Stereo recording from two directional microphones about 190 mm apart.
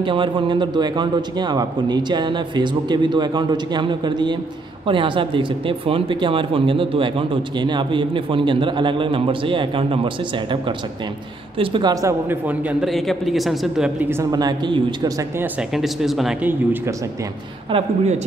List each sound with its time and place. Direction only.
0.0 s speech: 25° right (ahead or behind)
15.7 s speech: centre (ahead or behind)
17.6 s speech: 30° right (ahead or behind)